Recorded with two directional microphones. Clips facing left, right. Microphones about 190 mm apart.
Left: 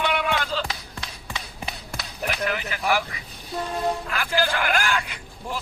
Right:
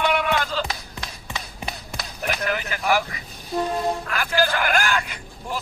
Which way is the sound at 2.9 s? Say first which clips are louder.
Right 2 dB; 45° right (ahead or behind).